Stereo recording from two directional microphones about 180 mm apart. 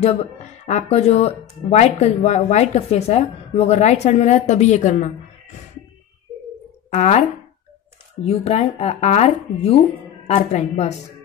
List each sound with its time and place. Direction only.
0.7 s a woman's voice: 40° left (ahead or behind)
6.9 s speech: 40° left (ahead or behind)
8.3 s a woman's voice: 35° left (ahead or behind)